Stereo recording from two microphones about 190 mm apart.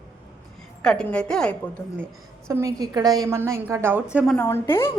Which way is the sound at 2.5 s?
15° right (ahead or behind).